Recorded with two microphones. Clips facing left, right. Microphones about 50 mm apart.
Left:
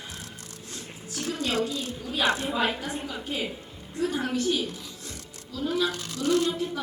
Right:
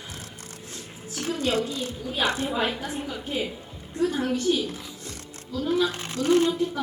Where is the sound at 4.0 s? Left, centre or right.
Centre.